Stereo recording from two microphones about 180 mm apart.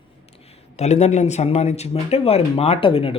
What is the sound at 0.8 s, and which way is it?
A man's voice, 40° left (ahead or behind).